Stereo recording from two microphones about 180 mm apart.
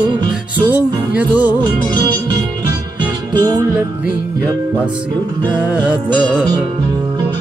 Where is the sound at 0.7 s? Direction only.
10° right (ahead or behind).